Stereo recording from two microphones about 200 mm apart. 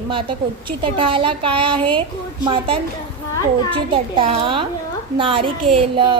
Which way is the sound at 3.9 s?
25° right (ahead or behind).